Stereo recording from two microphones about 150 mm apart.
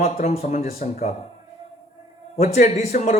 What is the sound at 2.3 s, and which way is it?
Speech, 50° left (ahead or behind).